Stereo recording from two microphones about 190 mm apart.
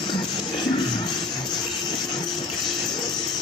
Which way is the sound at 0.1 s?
20° left (ahead or behind).